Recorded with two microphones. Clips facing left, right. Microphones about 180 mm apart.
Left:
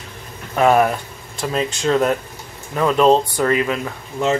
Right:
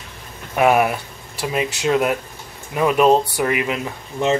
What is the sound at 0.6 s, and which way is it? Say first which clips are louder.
Speech: left 1 dB; 10° right (ahead or behind).